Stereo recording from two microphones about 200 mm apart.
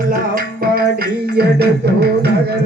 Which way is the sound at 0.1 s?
45° right (ahead or behind).